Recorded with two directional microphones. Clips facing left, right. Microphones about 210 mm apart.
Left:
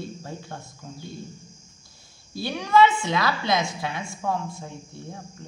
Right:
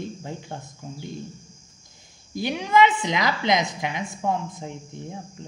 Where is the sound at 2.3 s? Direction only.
20° right (ahead or behind).